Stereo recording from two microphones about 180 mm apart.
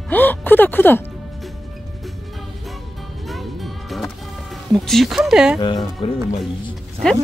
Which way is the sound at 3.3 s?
Centre (ahead or behind).